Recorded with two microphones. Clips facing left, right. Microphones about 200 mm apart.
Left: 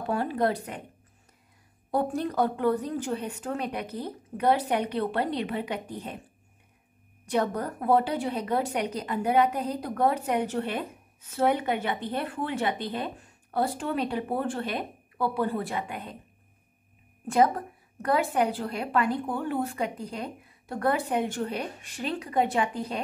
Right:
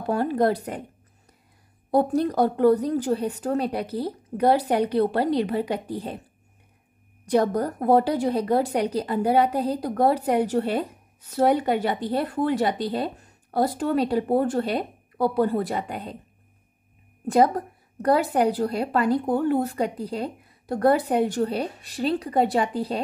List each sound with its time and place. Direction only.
0.1 s a woman's voice: 40° right (ahead or behind)
1.9 s a woman's voice: 35° right (ahead or behind)
7.2 s a woman's voice: 35° right (ahead or behind)
17.3 s a woman's voice: 35° right (ahead or behind)